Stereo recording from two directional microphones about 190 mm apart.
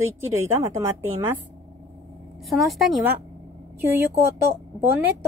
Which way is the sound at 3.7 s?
10° right (ahead or behind).